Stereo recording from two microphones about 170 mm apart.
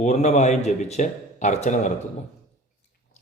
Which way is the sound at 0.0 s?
45° left (ahead or behind).